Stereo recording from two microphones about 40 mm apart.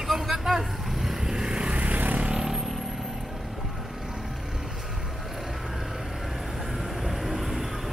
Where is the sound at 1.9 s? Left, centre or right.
Right.